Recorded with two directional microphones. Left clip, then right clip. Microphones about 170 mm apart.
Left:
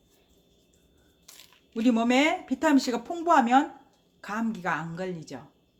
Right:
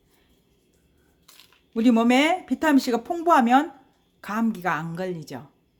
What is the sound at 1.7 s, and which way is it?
Speech, 35° right (ahead or behind).